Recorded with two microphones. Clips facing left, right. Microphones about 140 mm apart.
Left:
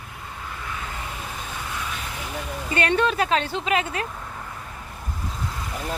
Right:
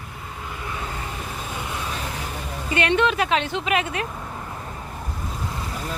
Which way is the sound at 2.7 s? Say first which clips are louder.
Right 1 dB; 40° left (ahead or behind).